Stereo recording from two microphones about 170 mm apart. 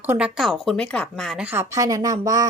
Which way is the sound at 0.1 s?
5° right (ahead or behind).